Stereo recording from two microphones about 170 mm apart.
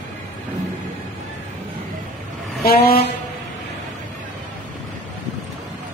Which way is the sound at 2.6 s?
60° left (ahead or behind).